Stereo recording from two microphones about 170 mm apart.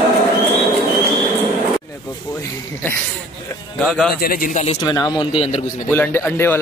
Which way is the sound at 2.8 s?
10° left (ahead or behind).